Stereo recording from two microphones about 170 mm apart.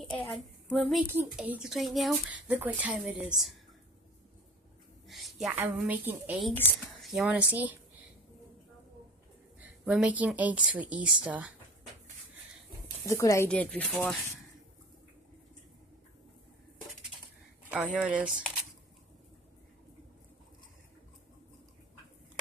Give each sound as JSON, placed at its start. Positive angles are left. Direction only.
{"t": 0.0, "sound": "a woman's voice", "side_deg": 5}
{"t": 5.0, "sound": "a sound", "side_deg": 0}
{"t": 5.6, "sound": "speech", "side_deg": -10}
{"t": 9.6, "sound": "speech", "side_deg": -5}
{"t": 13.0, "sound": "speech", "side_deg": 20}
{"t": 13.5, "sound": "speech", "side_deg": 5}
{"t": 17.6, "sound": "speech", "side_deg": -10}